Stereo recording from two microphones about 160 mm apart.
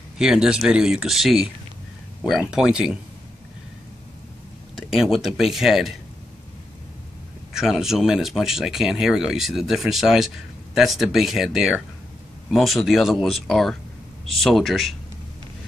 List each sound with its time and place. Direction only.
0.2 s speech: 5° right (ahead or behind)
4.7 s speech: centre (ahead or behind)
7.5 s speech: centre (ahead or behind)